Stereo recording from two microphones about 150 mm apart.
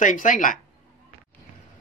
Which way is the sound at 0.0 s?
60° left (ahead or behind).